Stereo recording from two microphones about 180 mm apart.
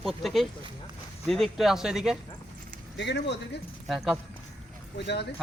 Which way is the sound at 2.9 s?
75° left (ahead or behind).